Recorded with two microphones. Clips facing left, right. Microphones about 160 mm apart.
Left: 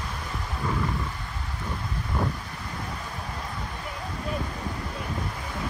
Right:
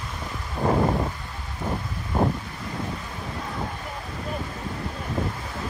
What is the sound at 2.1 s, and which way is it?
Wind, 40° right (ahead or behind).